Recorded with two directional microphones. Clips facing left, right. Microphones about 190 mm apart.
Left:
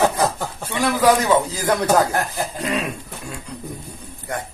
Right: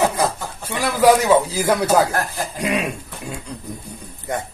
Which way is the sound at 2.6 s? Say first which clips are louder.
Right 3 dB; 15° right (ahead or behind).